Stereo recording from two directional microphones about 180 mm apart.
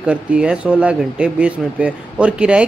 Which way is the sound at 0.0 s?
5° right (ahead or behind).